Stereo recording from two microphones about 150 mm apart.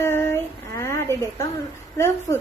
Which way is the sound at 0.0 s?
15° left (ahead or behind).